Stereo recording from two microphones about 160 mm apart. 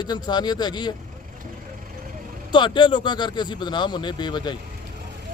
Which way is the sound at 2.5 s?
30° left (ahead or behind).